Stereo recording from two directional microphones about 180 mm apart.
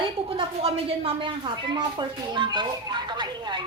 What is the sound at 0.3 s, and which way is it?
A woman's voice, 30° right (ahead or behind).